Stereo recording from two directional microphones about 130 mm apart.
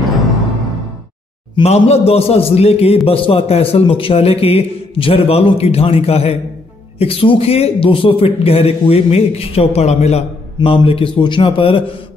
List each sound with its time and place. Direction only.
1.6 s a man's voice: 55° left (ahead or behind)